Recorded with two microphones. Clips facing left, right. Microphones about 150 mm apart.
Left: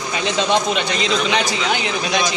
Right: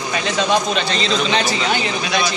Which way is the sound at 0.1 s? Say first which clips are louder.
Even; 20° left (ahead or behind).